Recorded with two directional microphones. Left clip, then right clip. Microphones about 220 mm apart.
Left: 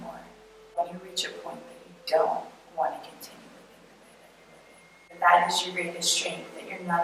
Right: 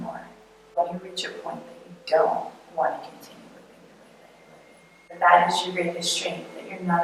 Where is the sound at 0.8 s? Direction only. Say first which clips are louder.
Right 5 dB; 20° right (ahead or behind).